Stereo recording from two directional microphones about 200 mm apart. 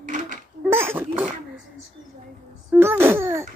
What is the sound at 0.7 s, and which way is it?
Speech, 10° right (ahead or behind).